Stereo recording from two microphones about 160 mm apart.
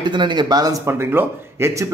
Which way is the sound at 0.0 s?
30° right (ahead or behind).